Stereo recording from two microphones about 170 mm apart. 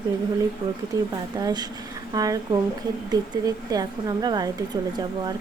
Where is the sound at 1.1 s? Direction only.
20° right (ahead or behind).